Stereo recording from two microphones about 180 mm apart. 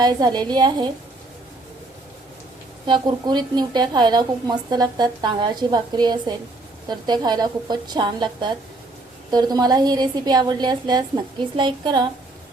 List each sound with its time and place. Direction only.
0.0 s a woman's voice: 25° right (ahead or behind)
2.8 s a woman's voice: 25° right (ahead or behind)